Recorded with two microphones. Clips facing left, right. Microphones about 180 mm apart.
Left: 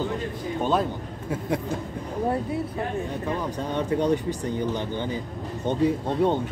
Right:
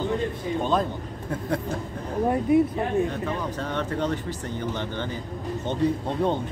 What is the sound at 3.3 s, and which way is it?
Speech, 15° left (ahead or behind).